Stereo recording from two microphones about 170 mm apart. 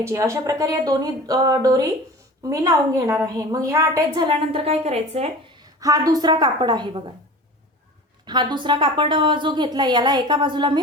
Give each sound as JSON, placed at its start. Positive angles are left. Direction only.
{"t": 0.0, "sound": "a woman's voice", "side_deg": -20}
{"t": 5.5, "sound": "a woman's voice", "side_deg": -20}
{"t": 8.2, "sound": "a woman's voice", "side_deg": -25}